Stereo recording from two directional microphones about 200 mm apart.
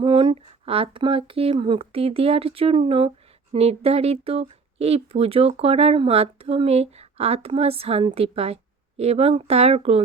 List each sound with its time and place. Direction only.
0.0 s speech: 25° right (ahead or behind)